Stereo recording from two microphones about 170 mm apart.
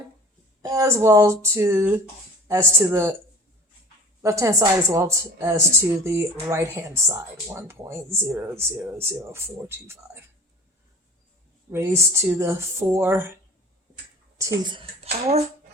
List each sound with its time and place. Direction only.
0.6 s speech: 20° right (ahead or behind)
4.2 s speech: 15° right (ahead or behind)
11.7 s speech: 15° right (ahead or behind)
14.3 s speech: 20° right (ahead or behind); by 15.4 s 35° right (ahead or behind)